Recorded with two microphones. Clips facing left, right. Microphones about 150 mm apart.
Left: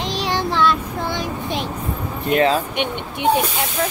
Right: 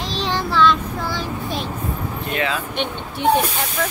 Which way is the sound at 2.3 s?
35° left (ahead or behind).